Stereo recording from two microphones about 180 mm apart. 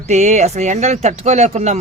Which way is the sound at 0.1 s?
40° right (ahead or behind).